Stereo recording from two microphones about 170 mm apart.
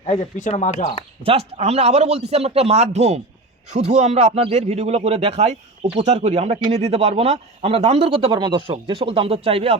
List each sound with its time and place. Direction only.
0.0 s speech: 40° left (ahead or behind)
1.2 s a man's voice: 35° right (ahead or behind)